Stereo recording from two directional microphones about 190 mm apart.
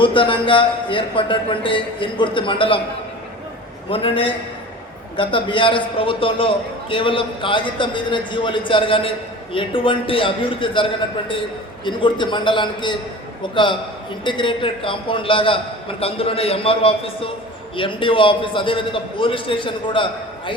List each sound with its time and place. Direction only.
0.0 s a man's voice: 25° left (ahead or behind)
3.8 s a man's voice: 30° left (ahead or behind)